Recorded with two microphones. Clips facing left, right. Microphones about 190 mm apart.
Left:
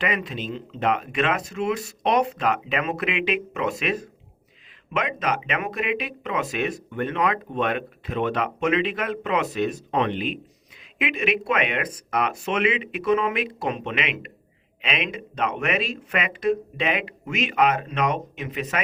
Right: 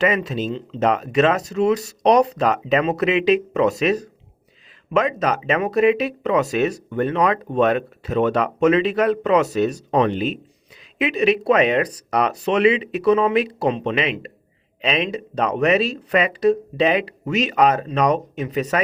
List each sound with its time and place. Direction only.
0.2 s speech: 40° right (ahead or behind)